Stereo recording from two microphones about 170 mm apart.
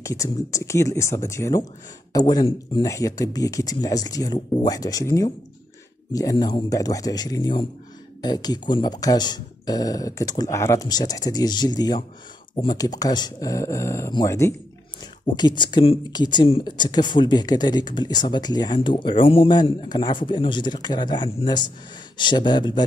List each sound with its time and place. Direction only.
0.0 s speech: 20° left (ahead or behind)